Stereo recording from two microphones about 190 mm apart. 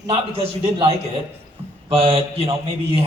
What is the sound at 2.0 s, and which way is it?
Speech, 30° right (ahead or behind).